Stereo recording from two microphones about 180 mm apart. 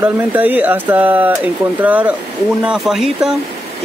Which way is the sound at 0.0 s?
10° right (ahead or behind).